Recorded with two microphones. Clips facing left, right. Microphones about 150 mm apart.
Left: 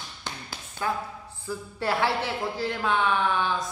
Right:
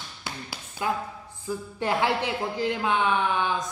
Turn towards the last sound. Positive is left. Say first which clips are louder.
# even
turn(degrees=-15)  # may be behind; listen again after turning